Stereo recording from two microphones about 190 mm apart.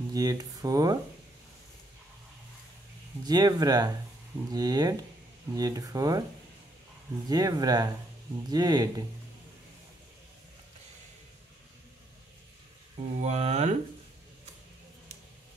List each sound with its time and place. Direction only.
0.1 s speech: 20° right (ahead or behind)
3.3 s speech: 20° right (ahead or behind)
7.2 s speech: 20° right (ahead or behind)
13.2 s speech: 35° right (ahead or behind)